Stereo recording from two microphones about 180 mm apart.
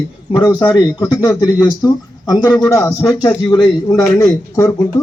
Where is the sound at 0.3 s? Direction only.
25° left (ahead or behind).